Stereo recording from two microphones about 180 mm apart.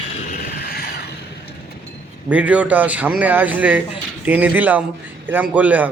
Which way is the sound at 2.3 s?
5° right (ahead or behind).